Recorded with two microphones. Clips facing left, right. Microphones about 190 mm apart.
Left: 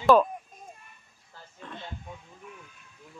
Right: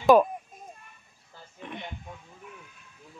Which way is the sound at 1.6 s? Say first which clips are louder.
Right 2 dB; 20° right (ahead or behind).